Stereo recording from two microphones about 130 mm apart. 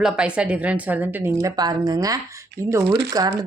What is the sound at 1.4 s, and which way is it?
Speech, 25° right (ahead or behind).